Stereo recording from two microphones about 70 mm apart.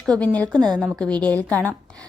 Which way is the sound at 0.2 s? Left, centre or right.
Centre.